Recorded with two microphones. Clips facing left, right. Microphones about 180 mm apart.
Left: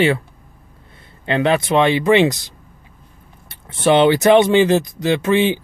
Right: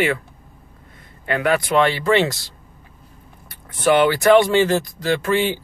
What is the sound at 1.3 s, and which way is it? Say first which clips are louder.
Speech: left 3 dB; 25° left (ahead or behind).